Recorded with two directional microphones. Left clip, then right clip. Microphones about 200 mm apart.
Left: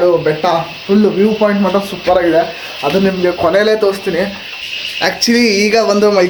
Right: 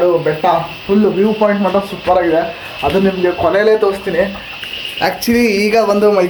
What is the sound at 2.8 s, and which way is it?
Speech, 10° left (ahead or behind).